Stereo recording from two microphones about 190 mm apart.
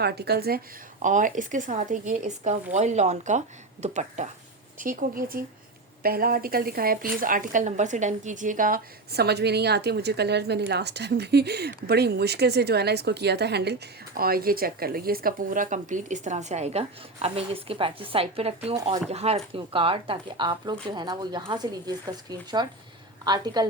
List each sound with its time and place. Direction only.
0.0 s speech: 60° right (ahead or behind)
1.0 s speech: 40° right (ahead or behind); by 23.6 s 20° right (ahead or behind)